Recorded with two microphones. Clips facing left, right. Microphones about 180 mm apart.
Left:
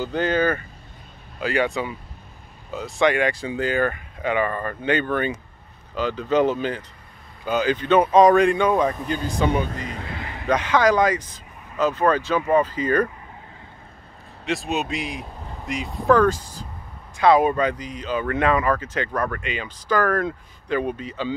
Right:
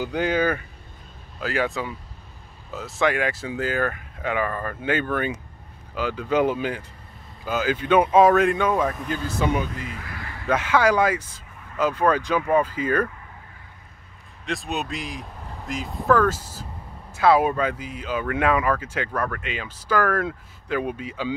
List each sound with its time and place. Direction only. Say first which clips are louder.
0.0 s speech: left 1 dB; 10° right (ahead or behind)
9.7 s speech: left 3 dB; 40° left (ahead or behind)
10.0 s a sound: left 3 dB; 20° left (ahead or behind)
10.5 s speech: left 1 dB; 5° right (ahead or behind)
14.4 s speech: left 3 dB; centre (ahead or behind)